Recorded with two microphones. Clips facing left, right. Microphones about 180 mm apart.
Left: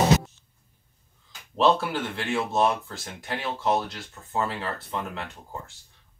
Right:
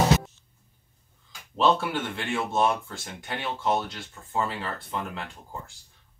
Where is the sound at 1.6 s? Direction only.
Centre (ahead or behind).